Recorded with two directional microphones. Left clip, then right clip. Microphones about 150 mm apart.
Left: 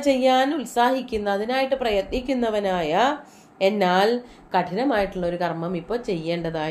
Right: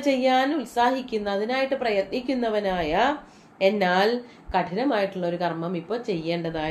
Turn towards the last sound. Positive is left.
turn(degrees=50)  # may be behind; listen again after turning